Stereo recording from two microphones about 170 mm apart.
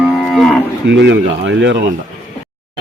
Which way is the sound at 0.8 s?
90° right.